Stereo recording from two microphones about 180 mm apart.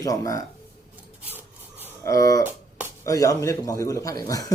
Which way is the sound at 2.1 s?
20° left (ahead or behind).